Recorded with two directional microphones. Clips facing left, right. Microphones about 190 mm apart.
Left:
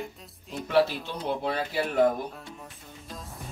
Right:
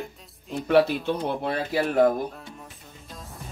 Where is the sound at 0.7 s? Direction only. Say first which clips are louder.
Right 4 dB; 55° right (ahead or behind).